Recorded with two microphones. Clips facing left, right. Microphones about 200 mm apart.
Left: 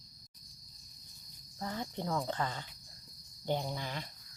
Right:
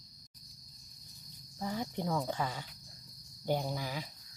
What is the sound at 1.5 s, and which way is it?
Speech, 10° right (ahead or behind).